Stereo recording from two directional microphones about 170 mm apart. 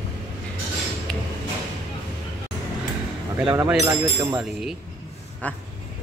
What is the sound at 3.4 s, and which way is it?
Speech, 15° right (ahead or behind).